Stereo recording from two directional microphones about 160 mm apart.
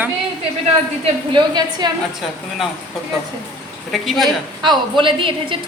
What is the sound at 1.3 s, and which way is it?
Speech, 25° right (ahead or behind).